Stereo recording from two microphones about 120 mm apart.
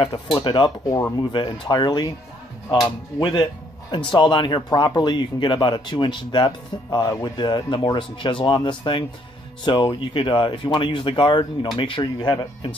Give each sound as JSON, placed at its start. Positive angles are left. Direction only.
{"t": 0.0, "sound": "speech", "side_deg": 40}